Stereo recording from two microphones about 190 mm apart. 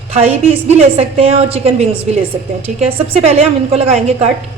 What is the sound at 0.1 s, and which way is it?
A woman's voice, 35° right (ahead or behind).